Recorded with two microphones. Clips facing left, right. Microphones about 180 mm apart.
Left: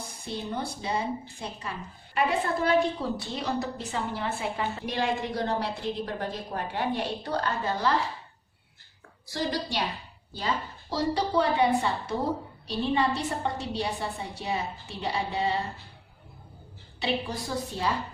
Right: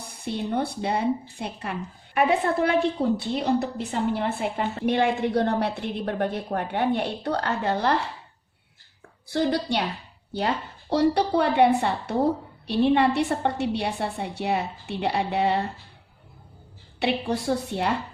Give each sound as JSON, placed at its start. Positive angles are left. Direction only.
{"t": 0.1, "sound": "a woman's voice", "side_deg": -65}
{"t": 9.3, "sound": "a woman's voice", "side_deg": -60}
{"t": 17.0, "sound": "a woman's voice", "side_deg": -65}